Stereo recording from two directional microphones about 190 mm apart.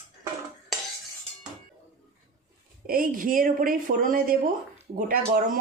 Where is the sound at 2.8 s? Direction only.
50° right (ahead or behind).